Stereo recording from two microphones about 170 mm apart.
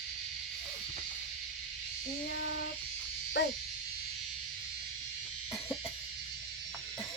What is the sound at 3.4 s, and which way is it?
Dog, 90° left.